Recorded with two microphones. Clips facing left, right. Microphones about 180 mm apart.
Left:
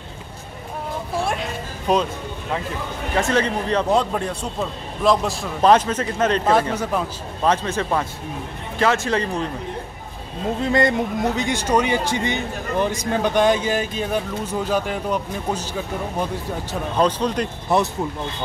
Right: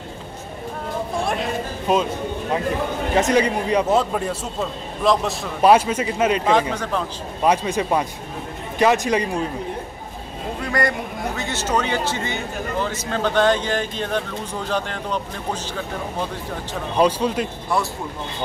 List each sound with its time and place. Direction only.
3.2 s a man's voice: 15° right (ahead or behind)
6.7 s speech: 10° left (ahead or behind)
7.4 s a man's voice: 10° right (ahead or behind)
10.6 s speech: 25° left (ahead or behind)
16.9 s a man's voice: 10° right (ahead or behind)
17.7 s speech: 20° left (ahead or behind)